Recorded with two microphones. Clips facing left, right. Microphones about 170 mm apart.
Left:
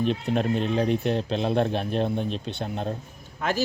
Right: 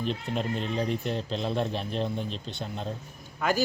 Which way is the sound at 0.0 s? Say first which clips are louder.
Left 6 dB; 60° left (ahead or behind).